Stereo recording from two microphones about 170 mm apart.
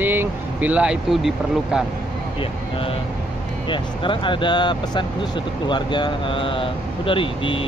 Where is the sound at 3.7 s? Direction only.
30° left (ahead or behind).